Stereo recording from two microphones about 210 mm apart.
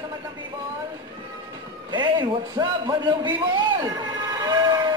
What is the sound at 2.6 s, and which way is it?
Music, 20° right (ahead or behind).